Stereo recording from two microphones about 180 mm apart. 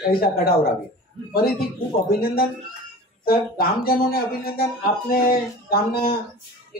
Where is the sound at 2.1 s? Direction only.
55° left (ahead or behind).